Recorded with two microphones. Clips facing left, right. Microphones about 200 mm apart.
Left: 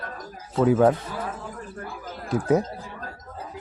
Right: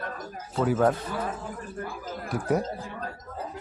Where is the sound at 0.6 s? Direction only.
15° left (ahead or behind).